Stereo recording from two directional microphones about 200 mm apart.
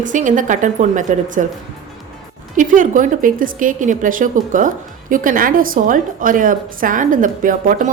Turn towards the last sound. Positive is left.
turn(degrees=-40)  # may be behind; listen again after turning